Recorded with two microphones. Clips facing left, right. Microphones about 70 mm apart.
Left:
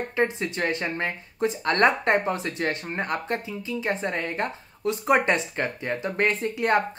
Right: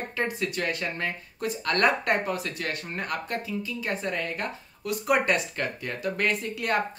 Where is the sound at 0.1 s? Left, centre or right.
Left.